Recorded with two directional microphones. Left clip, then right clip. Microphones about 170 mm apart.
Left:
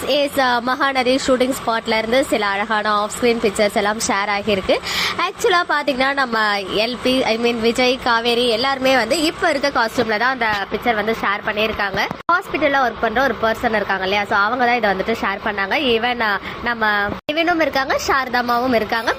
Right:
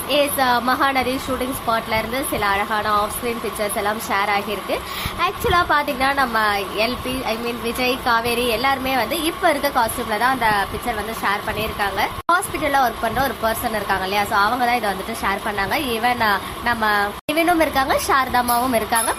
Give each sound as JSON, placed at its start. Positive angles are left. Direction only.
{"t": 0.1, "sound": "speech", "side_deg": 35}
{"t": 12.5, "sound": "speech", "side_deg": 10}